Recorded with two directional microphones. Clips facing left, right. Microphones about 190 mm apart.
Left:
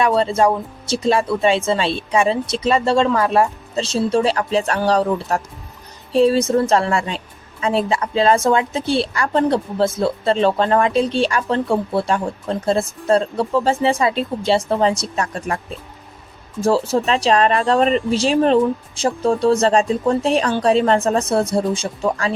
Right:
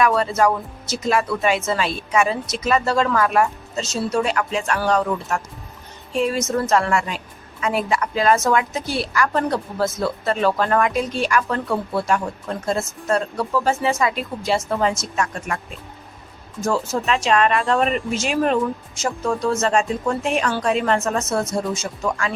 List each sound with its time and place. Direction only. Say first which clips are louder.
0.0 s a woman's voice: left 2 dB; 30° left (ahead or behind)